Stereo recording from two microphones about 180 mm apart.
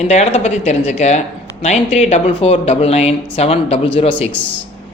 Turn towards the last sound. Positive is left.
turn(degrees=10)  # may be behind; listen again after turning